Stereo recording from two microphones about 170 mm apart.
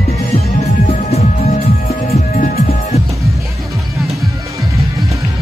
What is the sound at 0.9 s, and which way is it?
Music, 40° left (ahead or behind).